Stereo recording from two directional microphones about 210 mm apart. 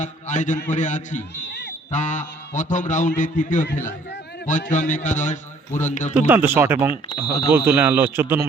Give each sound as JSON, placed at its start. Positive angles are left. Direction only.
{"t": 0.0, "sound": "a man's voice", "side_deg": 35}
{"t": 6.2, "sound": "a man's voice", "side_deg": -10}